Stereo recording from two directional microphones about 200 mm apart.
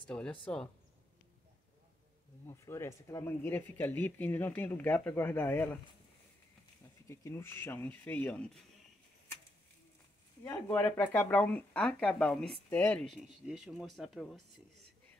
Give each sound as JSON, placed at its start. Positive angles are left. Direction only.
{"t": 0.0, "sound": "speech", "side_deg": 5}
{"t": 2.4, "sound": "speech", "side_deg": 15}
{"t": 7.1, "sound": "speech", "side_deg": 10}
{"t": 10.4, "sound": "speech", "side_deg": 10}